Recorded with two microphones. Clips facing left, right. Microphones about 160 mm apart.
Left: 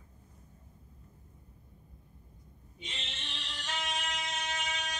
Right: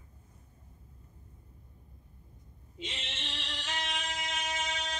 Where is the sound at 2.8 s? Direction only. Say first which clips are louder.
Right 4 dB; 90° right.